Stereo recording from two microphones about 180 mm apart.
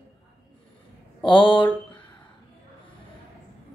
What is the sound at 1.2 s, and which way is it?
Speech, 25° left (ahead or behind).